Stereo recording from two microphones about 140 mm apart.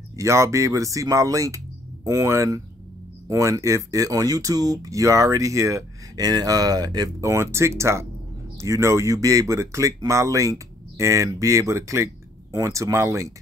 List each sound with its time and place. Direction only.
0.2 s speech: 20° right (ahead or behind)